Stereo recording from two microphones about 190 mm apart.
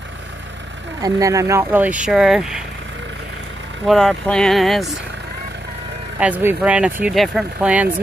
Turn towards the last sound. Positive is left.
turn(degrees=-5)  # may be behind; listen again after turning